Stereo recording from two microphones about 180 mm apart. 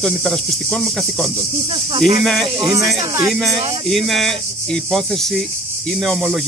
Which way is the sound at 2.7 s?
15° right (ahead or behind).